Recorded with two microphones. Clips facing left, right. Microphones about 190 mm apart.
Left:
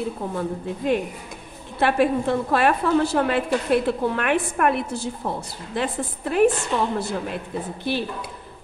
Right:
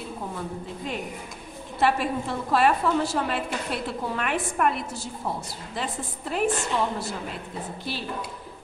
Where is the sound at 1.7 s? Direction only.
60° left (ahead or behind).